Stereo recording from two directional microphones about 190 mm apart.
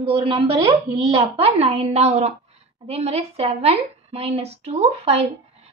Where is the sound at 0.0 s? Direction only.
30° right (ahead or behind).